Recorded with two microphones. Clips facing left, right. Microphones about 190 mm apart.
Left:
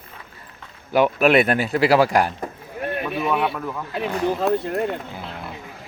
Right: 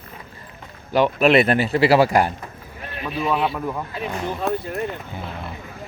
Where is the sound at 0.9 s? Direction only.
5° left (ahead or behind).